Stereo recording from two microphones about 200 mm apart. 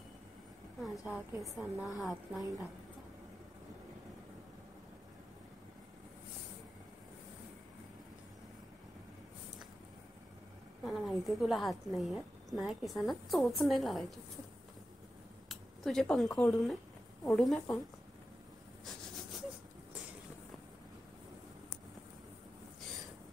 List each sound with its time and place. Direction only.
1.0 s a woman's voice: centre (ahead or behind)
10.9 s a woman's voice: centre (ahead or behind)
15.4 s a sound: centre (ahead or behind)
16.3 s a woman's voice: centre (ahead or behind)